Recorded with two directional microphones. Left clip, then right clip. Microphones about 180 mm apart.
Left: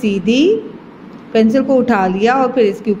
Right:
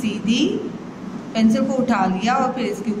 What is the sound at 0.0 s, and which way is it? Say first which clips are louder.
Speech: left 8 dB; 20° left (ahead or behind).